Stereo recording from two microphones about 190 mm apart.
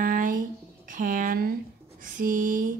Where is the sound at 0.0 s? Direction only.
45° right (ahead or behind).